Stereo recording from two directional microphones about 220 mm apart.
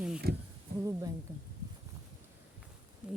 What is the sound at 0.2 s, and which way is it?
Speech, 45° right (ahead or behind).